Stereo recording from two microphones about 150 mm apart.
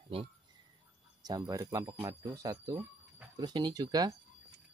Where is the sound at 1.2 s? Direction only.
25° right (ahead or behind).